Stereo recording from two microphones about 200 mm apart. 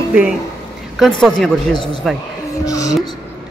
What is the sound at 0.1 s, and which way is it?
Speech, 5° right (ahead or behind).